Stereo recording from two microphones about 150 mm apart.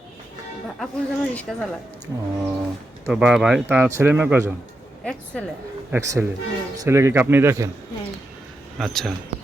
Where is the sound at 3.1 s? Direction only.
5° right (ahead or behind).